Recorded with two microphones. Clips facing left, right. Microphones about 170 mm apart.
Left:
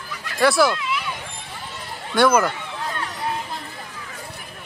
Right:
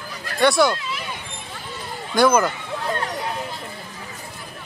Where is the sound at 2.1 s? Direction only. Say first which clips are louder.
Even; centre (ahead or behind).